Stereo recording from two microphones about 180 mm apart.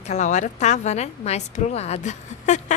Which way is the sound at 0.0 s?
40° left (ahead or behind).